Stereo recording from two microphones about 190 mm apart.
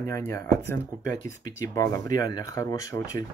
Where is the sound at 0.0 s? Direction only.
15° left (ahead or behind).